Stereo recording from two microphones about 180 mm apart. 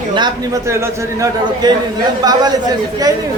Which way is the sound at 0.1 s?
20° right (ahead or behind).